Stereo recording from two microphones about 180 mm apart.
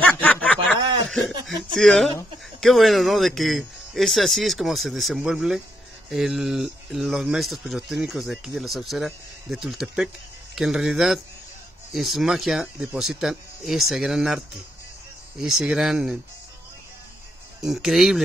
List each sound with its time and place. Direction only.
0.0 s a sound: 10° left (ahead or behind)
0.7 s snicker: 25° right (ahead or behind)
1.5 s speech: centre (ahead or behind)
17.6 s speech: centre (ahead or behind)